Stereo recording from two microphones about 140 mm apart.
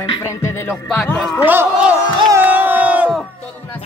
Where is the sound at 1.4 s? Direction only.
15° right (ahead or behind).